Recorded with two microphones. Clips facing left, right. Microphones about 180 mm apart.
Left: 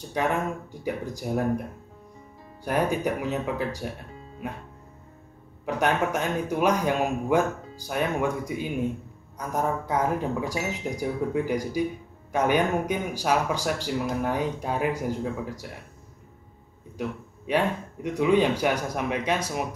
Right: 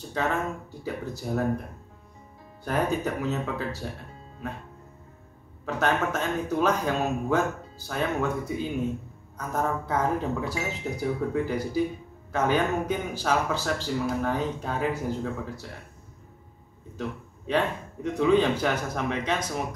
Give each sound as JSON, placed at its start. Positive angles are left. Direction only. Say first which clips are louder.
{"t": 0.1, "sound": "speech", "louder": "left 2 dB", "side_deg": 15}
{"t": 2.6, "sound": "speech", "louder": "left 2 dB", "side_deg": 10}
{"t": 5.7, "sound": "speech", "louder": "left 1 dB", "side_deg": 15}
{"t": 17.5, "sound": "speech", "louder": "left 1 dB", "side_deg": 10}